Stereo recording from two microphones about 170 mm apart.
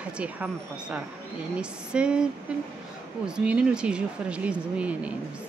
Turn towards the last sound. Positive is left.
turn(degrees=-5)  # may be behind; listen again after turning